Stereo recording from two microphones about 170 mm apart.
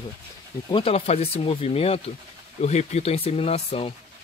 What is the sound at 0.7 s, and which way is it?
Speech, 30° left (ahead or behind).